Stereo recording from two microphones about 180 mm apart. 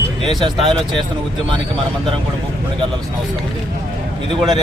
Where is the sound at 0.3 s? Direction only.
25° right (ahead or behind).